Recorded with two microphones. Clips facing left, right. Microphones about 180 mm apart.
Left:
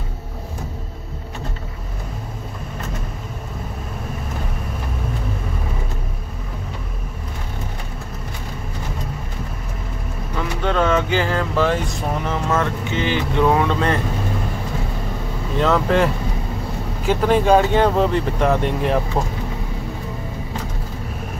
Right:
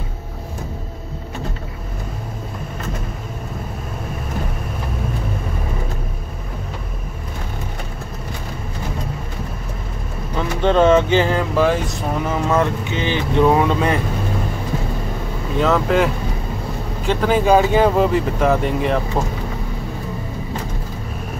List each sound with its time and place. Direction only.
10.6 s speech: 25° right (ahead or behind)
15.5 s speech: centre (ahead or behind)